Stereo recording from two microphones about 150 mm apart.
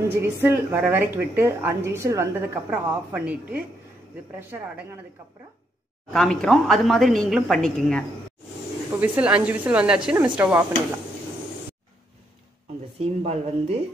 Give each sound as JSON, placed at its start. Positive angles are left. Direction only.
{"t": 0.1, "sound": "a woman's voice", "side_deg": -15}
{"t": 6.1, "sound": "a woman's voice", "side_deg": 5}
{"t": 9.0, "sound": "a woman's voice", "side_deg": -10}
{"t": 13.2, "sound": "a woman's voice", "side_deg": -45}